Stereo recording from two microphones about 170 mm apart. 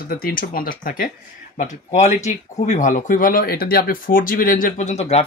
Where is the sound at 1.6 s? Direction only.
45° left (ahead or behind).